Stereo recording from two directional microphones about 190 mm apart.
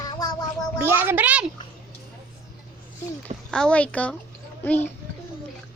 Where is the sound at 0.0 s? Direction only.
20° left (ahead or behind).